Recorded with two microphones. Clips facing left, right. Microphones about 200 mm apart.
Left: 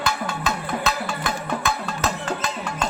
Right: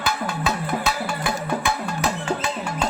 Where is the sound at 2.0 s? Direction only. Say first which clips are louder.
Right 2 dB; 10° right (ahead or behind).